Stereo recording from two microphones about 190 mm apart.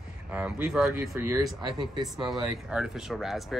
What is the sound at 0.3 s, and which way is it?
Speech, 5° right (ahead or behind).